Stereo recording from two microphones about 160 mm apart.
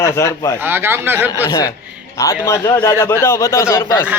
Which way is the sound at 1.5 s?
25° left (ahead or behind).